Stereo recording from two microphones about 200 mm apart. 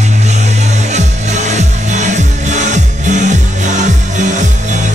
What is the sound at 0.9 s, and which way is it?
Music, 35° right (ahead or behind).